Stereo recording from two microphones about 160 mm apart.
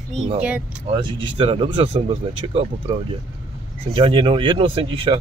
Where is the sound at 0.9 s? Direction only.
35° right (ahead or behind).